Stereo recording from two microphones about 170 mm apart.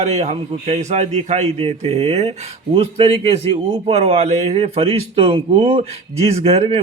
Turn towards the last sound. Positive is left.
turn(degrees=-35)  # may be behind; listen again after turning